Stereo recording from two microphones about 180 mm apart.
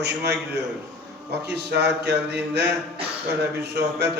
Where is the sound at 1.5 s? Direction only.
70° right (ahead or behind).